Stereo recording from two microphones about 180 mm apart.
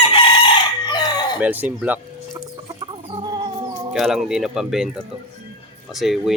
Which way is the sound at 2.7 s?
25° right (ahead or behind).